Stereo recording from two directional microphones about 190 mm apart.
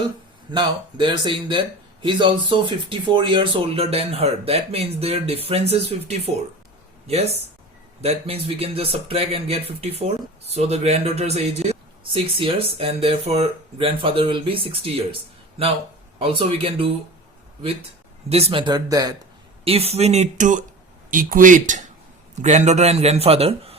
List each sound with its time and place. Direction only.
0.5 s a man's voice: 25° right (ahead or behind)
8.0 s a man's voice: 30° right (ahead or behind)
16.1 s speech: 30° right (ahead or behind)
18.3 s speech: 35° right (ahead or behind)
19.6 s a man's voice: 30° right (ahead or behind)